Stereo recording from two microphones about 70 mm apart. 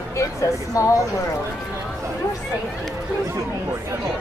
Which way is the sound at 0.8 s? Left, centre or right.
Left.